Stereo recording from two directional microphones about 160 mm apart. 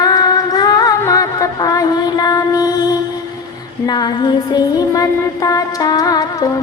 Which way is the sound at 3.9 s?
25° left (ahead or behind).